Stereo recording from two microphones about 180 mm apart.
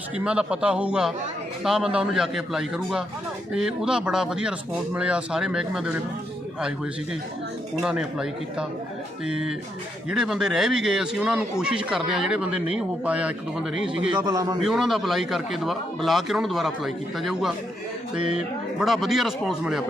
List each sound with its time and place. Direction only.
0.3 s a man's voice: 5° right (ahead or behind)
14.1 s a man's voice: 20° right (ahead or behind)
14.6 s a man's voice: centre (ahead or behind)
18.8 s a man's voice: centre (ahead or behind)